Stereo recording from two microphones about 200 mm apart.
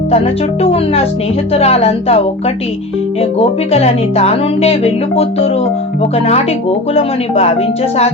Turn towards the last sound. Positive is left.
turn(degrees=30)  # may be behind; listen again after turning